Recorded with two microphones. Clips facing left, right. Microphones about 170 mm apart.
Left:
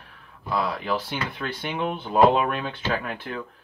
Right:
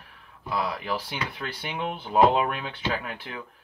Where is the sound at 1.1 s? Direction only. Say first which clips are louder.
Left 3 dB; 50° left (ahead or behind).